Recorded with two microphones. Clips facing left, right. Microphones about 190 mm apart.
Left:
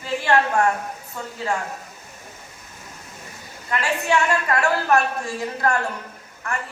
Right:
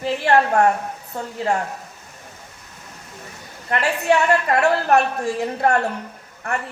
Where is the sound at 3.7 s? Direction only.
60° right (ahead or behind).